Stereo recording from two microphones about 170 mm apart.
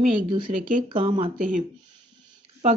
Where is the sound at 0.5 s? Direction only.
50° right (ahead or behind).